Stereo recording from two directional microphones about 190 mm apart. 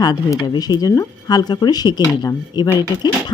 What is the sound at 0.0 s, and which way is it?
Speech, 20° left (ahead or behind).